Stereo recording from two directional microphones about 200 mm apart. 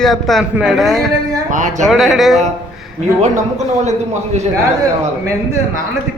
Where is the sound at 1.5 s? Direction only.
40° right (ahead or behind).